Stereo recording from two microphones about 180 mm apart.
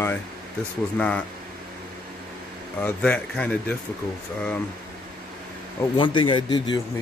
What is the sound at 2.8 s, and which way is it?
Speech, 5° left (ahead or behind).